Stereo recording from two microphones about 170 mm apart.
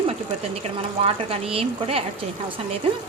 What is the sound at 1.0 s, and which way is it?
A woman's voice, 35° right (ahead or behind).